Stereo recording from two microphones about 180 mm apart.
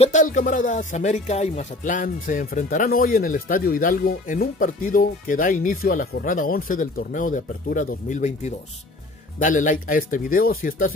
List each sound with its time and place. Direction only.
0.0 s speech: 45° left (ahead or behind)